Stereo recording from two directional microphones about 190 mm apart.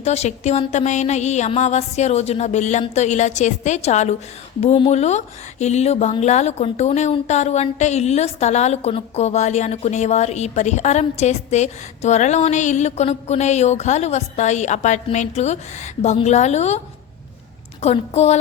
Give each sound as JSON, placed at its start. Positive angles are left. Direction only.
{"t": 0.0, "sound": "speech", "side_deg": 35}